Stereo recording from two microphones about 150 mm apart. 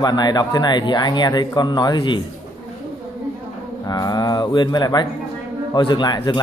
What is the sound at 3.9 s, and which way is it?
Speech, 25° left (ahead or behind).